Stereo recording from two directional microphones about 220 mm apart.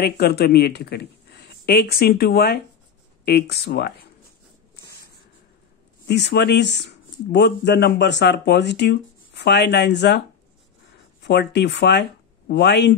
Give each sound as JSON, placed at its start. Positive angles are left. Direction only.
{"t": 0.0, "sound": "speech", "side_deg": 45}
{"t": 6.0, "sound": "speech", "side_deg": 50}
{"t": 11.2, "sound": "speech", "side_deg": 50}